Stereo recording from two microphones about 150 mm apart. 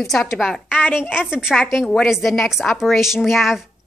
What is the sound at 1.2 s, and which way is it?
A woman's voice, 5° right (ahead or behind).